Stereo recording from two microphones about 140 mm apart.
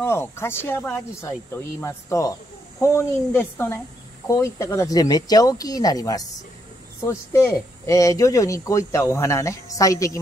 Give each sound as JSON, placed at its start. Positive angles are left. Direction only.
{"t": 0.0, "sound": "speech", "side_deg": 20}